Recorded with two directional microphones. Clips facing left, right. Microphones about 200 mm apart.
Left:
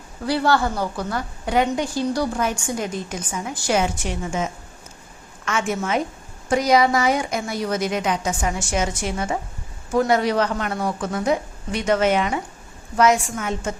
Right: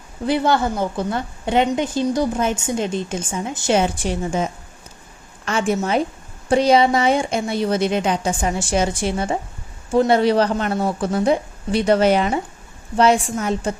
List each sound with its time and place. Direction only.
0.3 s a woman's voice: 20° right (ahead or behind)
5.5 s a woman's voice: 35° right (ahead or behind)